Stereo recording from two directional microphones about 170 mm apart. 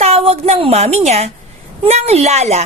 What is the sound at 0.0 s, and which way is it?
A woman's voice, 35° right (ahead or behind).